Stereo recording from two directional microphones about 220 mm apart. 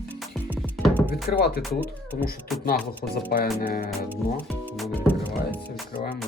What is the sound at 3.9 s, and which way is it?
Speech, 10° right (ahead or behind).